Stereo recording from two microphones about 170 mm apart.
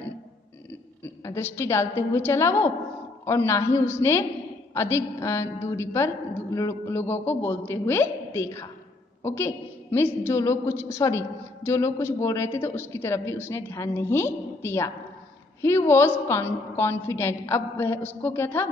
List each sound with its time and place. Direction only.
1.2 s a woman's voice: 15° left (ahead or behind)